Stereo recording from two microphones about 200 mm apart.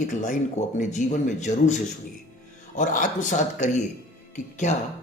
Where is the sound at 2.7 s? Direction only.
40° left (ahead or behind).